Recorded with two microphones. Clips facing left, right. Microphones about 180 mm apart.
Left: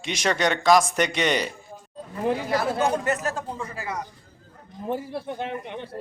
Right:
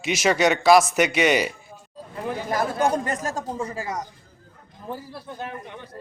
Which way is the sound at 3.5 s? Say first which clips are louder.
Right 3 dB; 40° right (ahead or behind).